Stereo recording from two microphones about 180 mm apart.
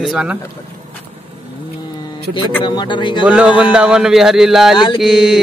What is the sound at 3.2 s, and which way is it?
Speech, 5° right (ahead or behind).